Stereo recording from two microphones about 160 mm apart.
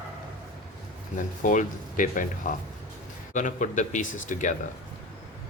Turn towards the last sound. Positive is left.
turn(degrees=50)  # may be behind; listen again after turning